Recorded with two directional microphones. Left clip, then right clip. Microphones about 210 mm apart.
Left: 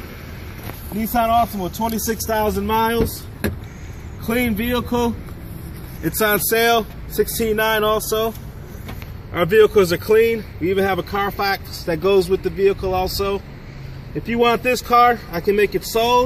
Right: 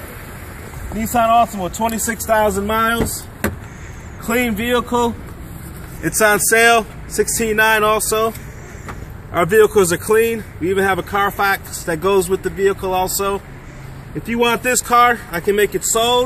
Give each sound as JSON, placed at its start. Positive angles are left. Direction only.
{"t": 0.9, "sound": "speech", "side_deg": -10}
{"t": 2.2, "sound": "speech", "side_deg": -25}
{"t": 4.3, "sound": "speech", "side_deg": 0}
{"t": 6.0, "sound": "speech", "side_deg": -15}
{"t": 9.3, "sound": "speech", "side_deg": -40}
{"t": 10.8, "sound": "speech", "side_deg": -20}
{"t": 12.0, "sound": "speech", "side_deg": -35}
{"t": 14.3, "sound": "speech", "side_deg": -20}
{"t": 15.3, "sound": "speech", "side_deg": -10}